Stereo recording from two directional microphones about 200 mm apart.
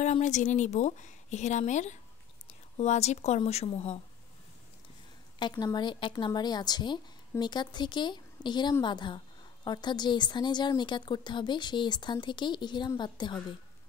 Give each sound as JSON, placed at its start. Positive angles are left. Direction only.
{"t": 0.0, "sound": "a woman's voice", "side_deg": 35}
{"t": 5.4, "sound": "a woman's voice", "side_deg": 20}